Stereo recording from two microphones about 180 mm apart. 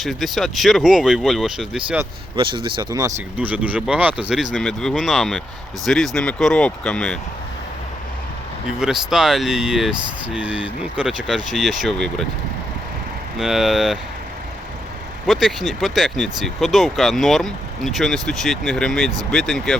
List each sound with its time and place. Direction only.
0.0 s speech: centre (ahead or behind)
2.3 s speech: 25° right (ahead or behind)
3.3 s speech: 10° right (ahead or behind)
8.8 s speech: 5° right (ahead or behind)
13.4 s speech: centre (ahead or behind)
15.3 s speech: centre (ahead or behind)